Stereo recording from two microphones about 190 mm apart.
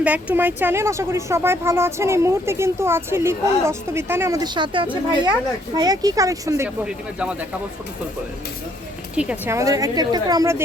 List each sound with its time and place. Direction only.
0.0 s speech: 5° right (ahead or behind)
6.8 s speech: 5° right (ahead or behind)
9.1 s speech: 5° right (ahead or behind)